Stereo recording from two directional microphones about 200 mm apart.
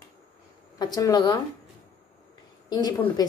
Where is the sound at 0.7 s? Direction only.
20° left (ahead or behind).